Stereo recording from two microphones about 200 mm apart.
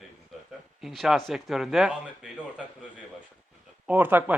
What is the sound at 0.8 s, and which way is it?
A man's voice, centre (ahead or behind).